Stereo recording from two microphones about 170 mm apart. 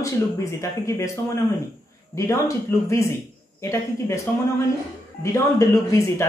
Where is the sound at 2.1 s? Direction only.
15° left (ahead or behind).